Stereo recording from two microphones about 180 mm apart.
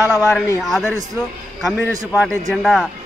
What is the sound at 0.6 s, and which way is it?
A man's voice, centre (ahead or behind).